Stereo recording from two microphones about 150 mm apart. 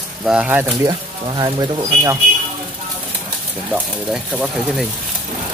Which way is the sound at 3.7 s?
5° right (ahead or behind).